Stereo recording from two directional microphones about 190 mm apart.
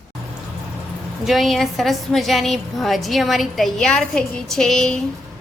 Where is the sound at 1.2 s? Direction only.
Centre (ahead or behind).